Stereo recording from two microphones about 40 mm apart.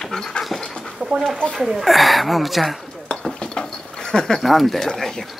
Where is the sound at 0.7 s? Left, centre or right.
Left.